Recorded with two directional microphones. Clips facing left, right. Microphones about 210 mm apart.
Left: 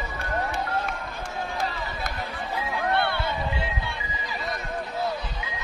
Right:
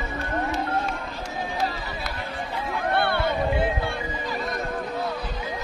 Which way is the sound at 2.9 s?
55° right (ahead or behind).